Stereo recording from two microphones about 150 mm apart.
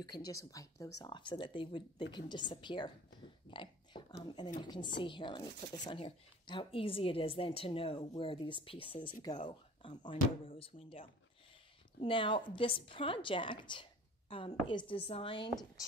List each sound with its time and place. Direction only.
0.0 s speech: 25° left (ahead or behind)